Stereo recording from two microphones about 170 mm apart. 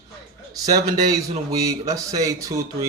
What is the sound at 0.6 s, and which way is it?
Speech, 20° right (ahead or behind).